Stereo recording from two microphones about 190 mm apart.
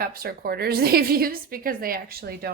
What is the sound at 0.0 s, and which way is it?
A woman's voice, 50° right (ahead or behind).